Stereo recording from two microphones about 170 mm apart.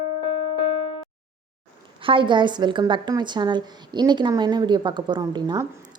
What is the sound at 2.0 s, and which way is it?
A woman's voice, 30° right (ahead or behind).